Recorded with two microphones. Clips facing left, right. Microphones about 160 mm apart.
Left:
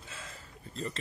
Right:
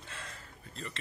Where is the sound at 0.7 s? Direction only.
40° left (ahead or behind).